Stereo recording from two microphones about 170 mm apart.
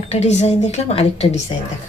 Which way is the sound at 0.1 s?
40° left (ahead or behind).